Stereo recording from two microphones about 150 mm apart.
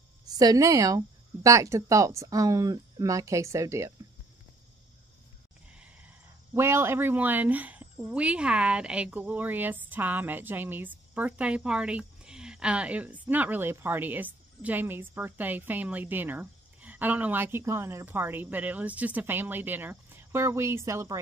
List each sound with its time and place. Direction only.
0.2 s speech: 25° right (ahead or behind)
5.8 s speech: 15° right (ahead or behind)